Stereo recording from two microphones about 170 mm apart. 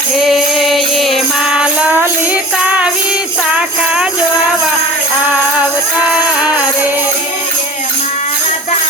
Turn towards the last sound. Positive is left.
turn(degrees=-5)  # may be behind; listen again after turning